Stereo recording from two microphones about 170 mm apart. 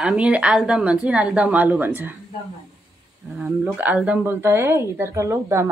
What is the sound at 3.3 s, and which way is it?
Speech, 5° right (ahead or behind).